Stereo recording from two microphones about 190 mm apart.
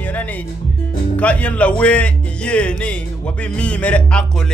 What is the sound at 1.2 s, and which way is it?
A man's voice, 5° left (ahead or behind).